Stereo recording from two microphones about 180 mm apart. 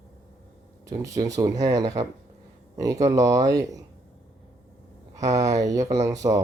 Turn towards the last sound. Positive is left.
turn(degrees=-20)  # may be behind; listen again after turning